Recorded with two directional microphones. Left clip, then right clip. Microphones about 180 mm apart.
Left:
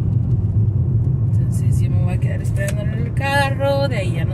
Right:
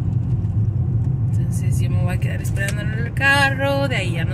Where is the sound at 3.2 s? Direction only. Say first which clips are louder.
Right 2 dB; 10° right (ahead or behind).